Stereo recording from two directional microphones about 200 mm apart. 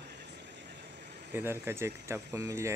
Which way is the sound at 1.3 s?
10° right (ahead or behind).